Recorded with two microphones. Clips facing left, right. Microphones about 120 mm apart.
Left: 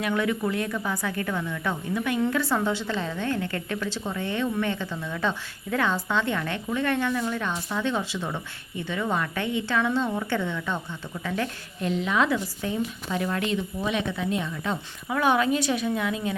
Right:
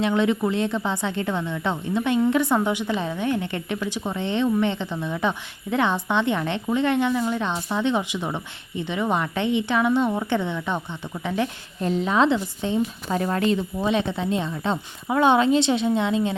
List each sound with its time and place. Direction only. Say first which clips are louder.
0.0 s a woman's voice: right 4 dB; 25° right (ahead or behind)
11.8 s a woman's voice: right 4 dB; 35° right (ahead or behind)
13.1 s a woman's voice: right 4 dB; 40° right (ahead or behind)